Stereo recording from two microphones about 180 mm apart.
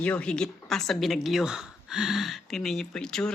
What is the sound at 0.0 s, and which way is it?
Speech, 5° left (ahead or behind).